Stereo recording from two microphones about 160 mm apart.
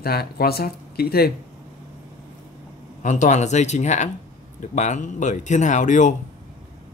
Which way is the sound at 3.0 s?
50° left (ahead or behind).